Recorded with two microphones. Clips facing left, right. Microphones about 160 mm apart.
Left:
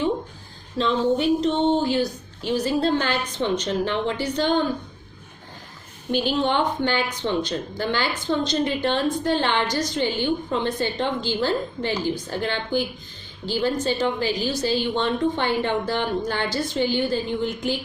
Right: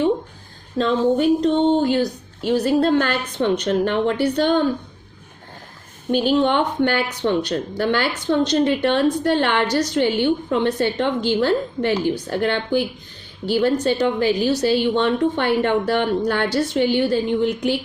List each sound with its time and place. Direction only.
0.8 s a sound: 50° right (ahead or behind)
2.5 s speech: 55° right (ahead or behind)
6.1 s speech: 50° right (ahead or behind)